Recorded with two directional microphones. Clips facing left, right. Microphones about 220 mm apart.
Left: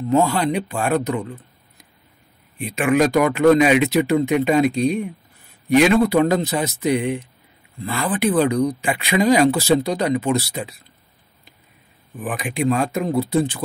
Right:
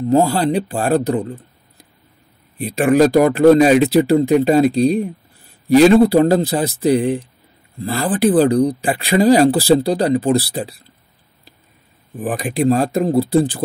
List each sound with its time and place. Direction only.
0.1 s speech: 35° right (ahead or behind)
12.2 s speech: 35° right (ahead or behind)